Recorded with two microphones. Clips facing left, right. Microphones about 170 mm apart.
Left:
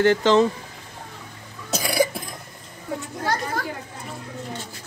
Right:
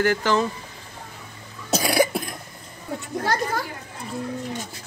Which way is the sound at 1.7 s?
75° right (ahead or behind).